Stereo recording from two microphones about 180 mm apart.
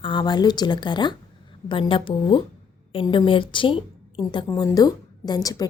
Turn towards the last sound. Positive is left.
turn(degrees=20)  # may be behind; listen again after turning